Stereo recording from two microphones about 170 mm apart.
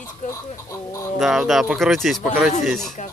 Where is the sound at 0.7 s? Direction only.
15° left (ahead or behind).